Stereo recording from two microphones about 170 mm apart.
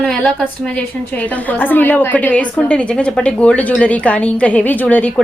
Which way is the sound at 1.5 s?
10° left (ahead or behind).